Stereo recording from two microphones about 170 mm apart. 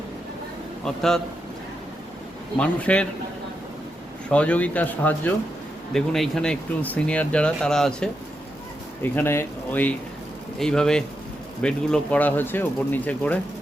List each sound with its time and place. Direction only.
0.9 s speech: 5° left (ahead or behind)
2.6 s speech: 5° left (ahead or behind)
4.3 s speech: 10° left (ahead or behind)